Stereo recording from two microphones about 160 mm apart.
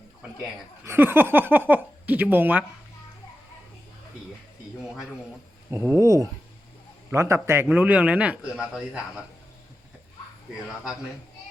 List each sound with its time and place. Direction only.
0.9 s a man's voice: 15° right (ahead or behind)
5.7 s a man's voice: 15° right (ahead or behind)